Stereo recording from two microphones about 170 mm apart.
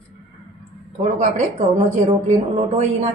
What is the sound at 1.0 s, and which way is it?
Speech, 45° right (ahead or behind).